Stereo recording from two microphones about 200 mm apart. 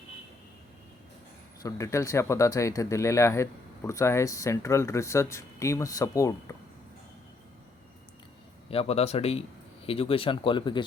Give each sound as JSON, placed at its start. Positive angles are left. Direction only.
{"t": 1.6, "sound": "speech", "side_deg": 15}
{"t": 8.7, "sound": "speech", "side_deg": 30}